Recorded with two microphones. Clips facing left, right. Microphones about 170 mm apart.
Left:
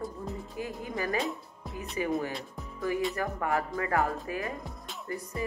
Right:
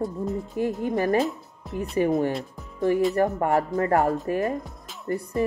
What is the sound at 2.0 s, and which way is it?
Speech, 45° right (ahead or behind).